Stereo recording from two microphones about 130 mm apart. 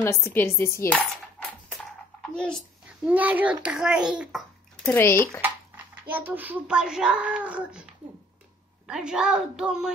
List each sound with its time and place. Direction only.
0.0 s dishes: 20° left (ahead or behind)
2.3 s a woman's voice: 5° left (ahead or behind)
3.1 s a child's voice: 10° right (ahead or behind)
4.8 s dishes: 20° left (ahead or behind)
6.0 s a child's voice: 15° right (ahead or behind)